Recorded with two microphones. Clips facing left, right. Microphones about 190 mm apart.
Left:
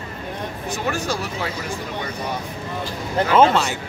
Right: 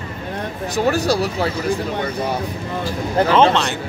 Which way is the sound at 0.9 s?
35° right (ahead or behind).